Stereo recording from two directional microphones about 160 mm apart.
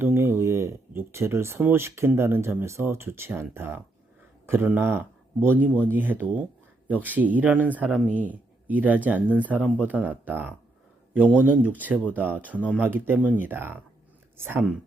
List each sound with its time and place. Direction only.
0.0 s speech: 15° right (ahead or behind)